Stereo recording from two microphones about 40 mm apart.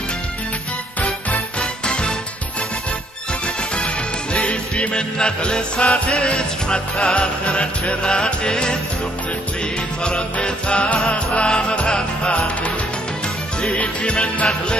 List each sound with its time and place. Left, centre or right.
1.9 s music: left
3.7 s music: left
10.0 s music: left
13.7 s music: left